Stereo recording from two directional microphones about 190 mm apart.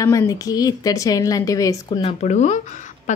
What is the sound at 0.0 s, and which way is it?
A woman's voice, 15° left (ahead or behind).